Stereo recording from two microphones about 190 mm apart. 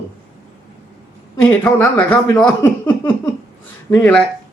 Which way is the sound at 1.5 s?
10° left (ahead or behind).